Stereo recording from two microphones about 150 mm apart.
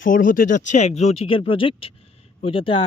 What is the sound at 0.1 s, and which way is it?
Speech, 65° left (ahead or behind).